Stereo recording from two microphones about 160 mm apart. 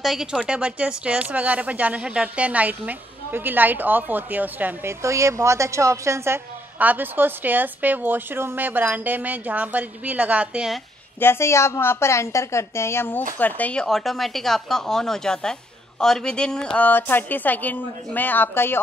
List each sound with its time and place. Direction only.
0.0 s speech: centre (ahead or behind)
11.1 s a woman's voice: 15° left (ahead or behind)